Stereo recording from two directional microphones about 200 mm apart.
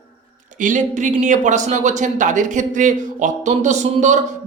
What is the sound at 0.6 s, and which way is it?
Speech, 40° right (ahead or behind).